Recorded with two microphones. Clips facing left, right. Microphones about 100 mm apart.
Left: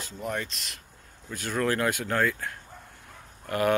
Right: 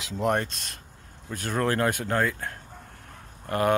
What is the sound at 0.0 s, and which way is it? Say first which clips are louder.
Speech: right 8 dB; 90° right.